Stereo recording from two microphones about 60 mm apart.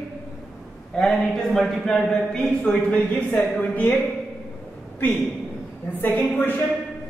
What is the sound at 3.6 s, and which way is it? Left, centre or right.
Speech, left.